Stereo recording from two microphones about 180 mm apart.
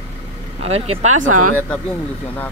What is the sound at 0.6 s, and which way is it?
Speech, 35° right (ahead or behind).